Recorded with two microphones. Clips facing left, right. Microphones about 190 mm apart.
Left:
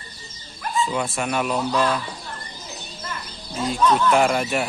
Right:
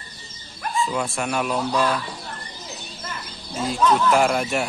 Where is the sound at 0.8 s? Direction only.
Centre (ahead or behind).